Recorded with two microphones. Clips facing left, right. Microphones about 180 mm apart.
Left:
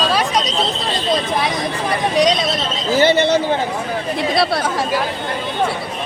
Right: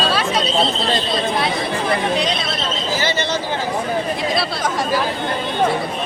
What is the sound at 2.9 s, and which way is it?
A man's voice, 60° left (ahead or behind).